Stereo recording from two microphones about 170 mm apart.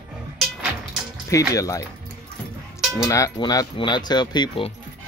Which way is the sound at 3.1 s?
20° left (ahead or behind).